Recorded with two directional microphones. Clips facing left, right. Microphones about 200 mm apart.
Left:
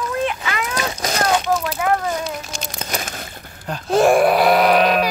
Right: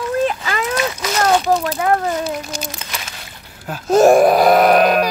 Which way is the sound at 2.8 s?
45° left (ahead or behind).